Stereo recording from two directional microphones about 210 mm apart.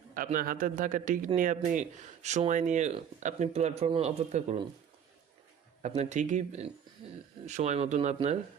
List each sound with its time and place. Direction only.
0.1 s speech: 40° right (ahead or behind)
6.0 s speech: 35° right (ahead or behind)